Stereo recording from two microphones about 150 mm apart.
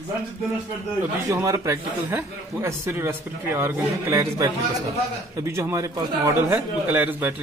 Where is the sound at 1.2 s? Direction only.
20° right (ahead or behind).